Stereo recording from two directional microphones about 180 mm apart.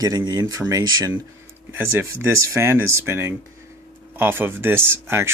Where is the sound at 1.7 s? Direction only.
10° right (ahead or behind).